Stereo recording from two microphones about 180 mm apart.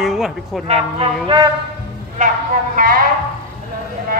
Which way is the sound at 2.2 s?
45° right (ahead or behind).